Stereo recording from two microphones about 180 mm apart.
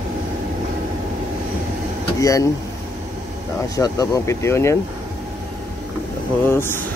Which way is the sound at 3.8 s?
20° left (ahead or behind).